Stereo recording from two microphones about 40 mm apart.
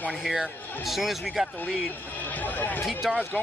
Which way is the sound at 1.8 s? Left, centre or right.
Left.